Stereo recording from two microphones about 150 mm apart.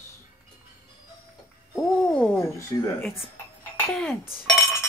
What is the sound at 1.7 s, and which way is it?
Speech, 5° left (ahead or behind).